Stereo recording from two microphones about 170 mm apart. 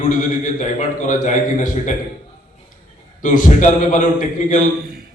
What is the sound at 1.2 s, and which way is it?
Speech, 45° left (ahead or behind).